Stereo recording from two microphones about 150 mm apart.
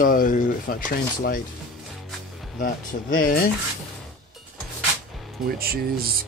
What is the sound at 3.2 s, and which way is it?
Speech, 75° left (ahead or behind).